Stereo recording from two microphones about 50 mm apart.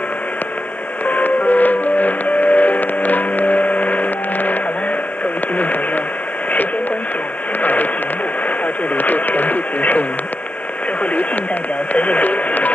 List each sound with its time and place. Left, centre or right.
1.0 s music: left
5.6 s radio: left
7.6 s radio: left
11.9 s radio: left